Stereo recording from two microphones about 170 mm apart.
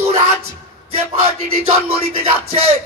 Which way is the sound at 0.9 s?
35° right (ahead or behind).